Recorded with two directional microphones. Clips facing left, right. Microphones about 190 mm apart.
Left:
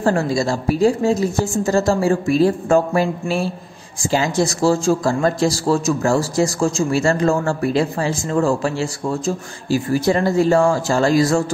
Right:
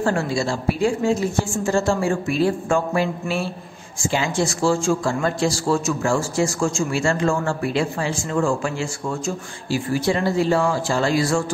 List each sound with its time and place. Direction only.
0.0 s a man's voice: 40° left (ahead or behind)